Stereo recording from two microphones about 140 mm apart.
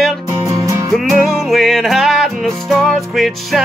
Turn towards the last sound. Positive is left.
turn(degrees=0)  # may be behind; listen again after turning